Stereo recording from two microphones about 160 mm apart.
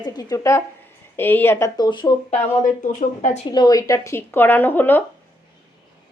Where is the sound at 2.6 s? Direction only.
50° left (ahead or behind).